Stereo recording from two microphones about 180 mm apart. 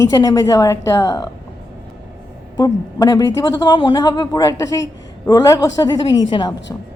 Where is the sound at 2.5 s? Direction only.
20° left (ahead or behind).